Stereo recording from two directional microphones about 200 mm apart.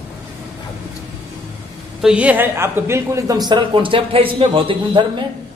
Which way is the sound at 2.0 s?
5° right (ahead or behind).